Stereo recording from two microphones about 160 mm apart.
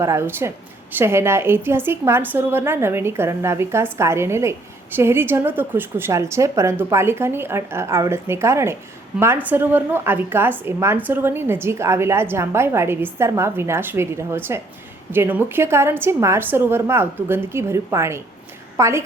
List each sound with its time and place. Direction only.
0.0 s a woman's voice: 15° right (ahead or behind)